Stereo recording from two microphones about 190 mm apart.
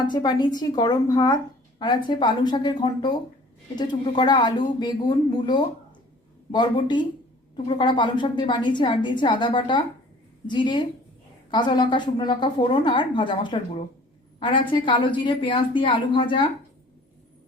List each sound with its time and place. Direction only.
0.1 s a woman's voice: 20° left (ahead or behind)